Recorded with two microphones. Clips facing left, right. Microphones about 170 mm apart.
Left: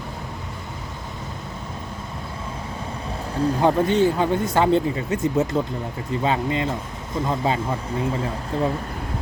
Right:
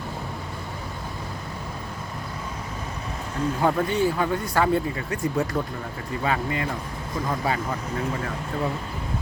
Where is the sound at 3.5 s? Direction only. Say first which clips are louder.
Left 4 dB; 20° left (ahead or behind).